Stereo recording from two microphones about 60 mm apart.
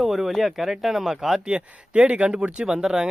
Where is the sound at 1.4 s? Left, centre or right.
Centre.